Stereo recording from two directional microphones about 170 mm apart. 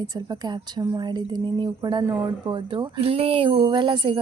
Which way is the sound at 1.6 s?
25° right (ahead or behind).